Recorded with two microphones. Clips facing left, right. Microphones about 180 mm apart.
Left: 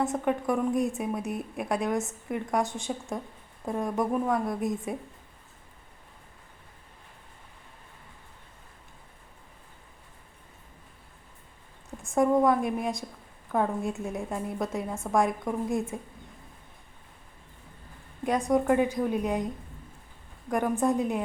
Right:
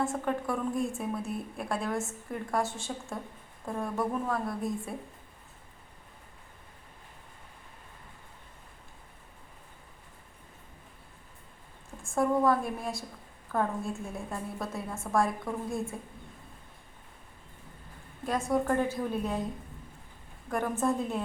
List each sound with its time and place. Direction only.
0.0 s a woman's voice: 20° left (ahead or behind)
12.0 s a woman's voice: 20° left (ahead or behind)
18.3 s a woman's voice: 15° left (ahead or behind)
20.5 s a woman's voice: 15° left (ahead or behind)